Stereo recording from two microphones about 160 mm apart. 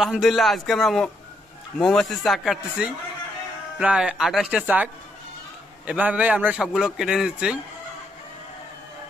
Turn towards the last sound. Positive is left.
turn(degrees=-5)  # may be behind; listen again after turning